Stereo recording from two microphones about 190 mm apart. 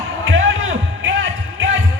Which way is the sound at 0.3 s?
90° right.